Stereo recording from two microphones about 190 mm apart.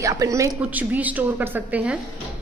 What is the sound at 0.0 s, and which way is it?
A woman's voice, 15° right (ahead or behind).